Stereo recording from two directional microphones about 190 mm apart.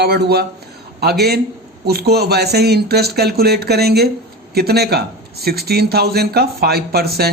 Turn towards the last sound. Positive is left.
turn(degrees=-55)  # may be behind; listen again after turning